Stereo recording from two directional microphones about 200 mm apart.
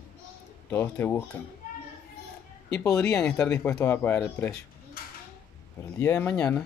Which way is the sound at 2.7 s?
15° left (ahead or behind).